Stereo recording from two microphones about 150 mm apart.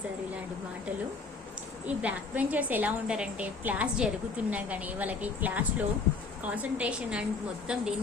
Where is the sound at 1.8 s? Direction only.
10° right (ahead or behind).